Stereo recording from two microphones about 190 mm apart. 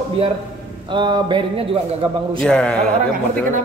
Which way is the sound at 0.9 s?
25° right (ahead or behind).